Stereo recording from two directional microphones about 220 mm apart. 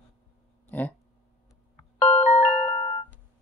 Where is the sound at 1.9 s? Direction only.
30° left (ahead or behind).